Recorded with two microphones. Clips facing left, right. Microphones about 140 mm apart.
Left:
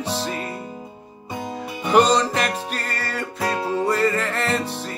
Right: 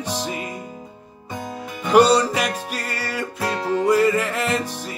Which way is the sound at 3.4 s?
15° left (ahead or behind).